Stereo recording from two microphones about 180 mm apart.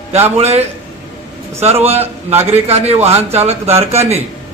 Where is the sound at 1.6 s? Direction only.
35° right (ahead or behind).